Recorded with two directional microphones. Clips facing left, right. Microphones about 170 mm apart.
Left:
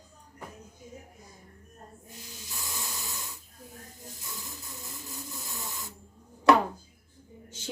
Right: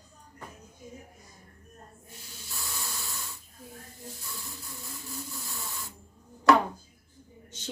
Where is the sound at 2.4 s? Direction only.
20° left (ahead or behind).